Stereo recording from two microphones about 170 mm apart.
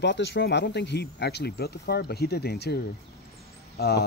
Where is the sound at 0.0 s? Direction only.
90° left.